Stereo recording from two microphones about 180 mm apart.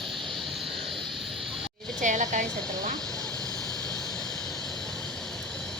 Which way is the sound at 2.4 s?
5° left (ahead or behind).